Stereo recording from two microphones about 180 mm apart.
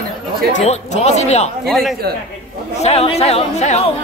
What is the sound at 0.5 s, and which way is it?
Speech, 40° left (ahead or behind).